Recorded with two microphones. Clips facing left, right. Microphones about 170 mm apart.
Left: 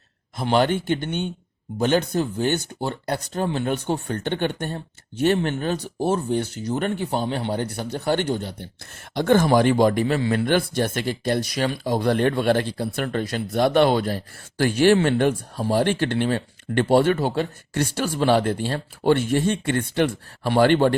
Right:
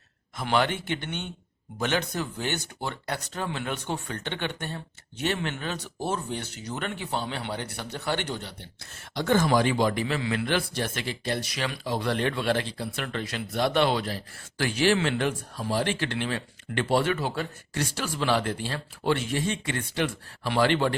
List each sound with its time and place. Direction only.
0.3 s speech: 35° left (ahead or behind)
9.1 s speech: 55° left (ahead or behind)